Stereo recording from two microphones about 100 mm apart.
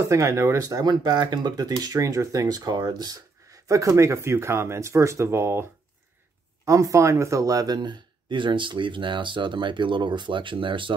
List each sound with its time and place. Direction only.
0.0 s speech: 30° right (ahead or behind); by 10.9 s 55° right (ahead or behind)